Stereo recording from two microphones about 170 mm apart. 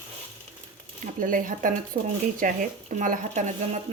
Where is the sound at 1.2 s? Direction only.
50° right (ahead or behind).